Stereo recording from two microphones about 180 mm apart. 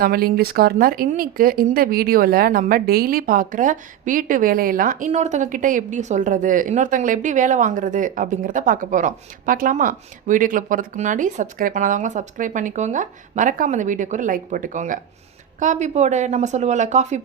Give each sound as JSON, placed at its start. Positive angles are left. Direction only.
{"t": 0.0, "sound": "a woman's voice", "side_deg": -55}